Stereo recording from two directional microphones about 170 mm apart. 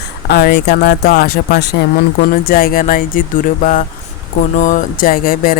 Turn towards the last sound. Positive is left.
turn(degrees=55)  # may be behind; listen again after turning